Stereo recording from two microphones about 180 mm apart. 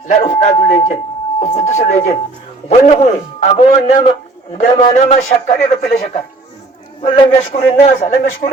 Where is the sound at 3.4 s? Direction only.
35° left (ahead or behind).